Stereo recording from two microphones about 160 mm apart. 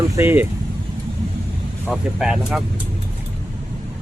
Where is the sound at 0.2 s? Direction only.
10° right (ahead or behind).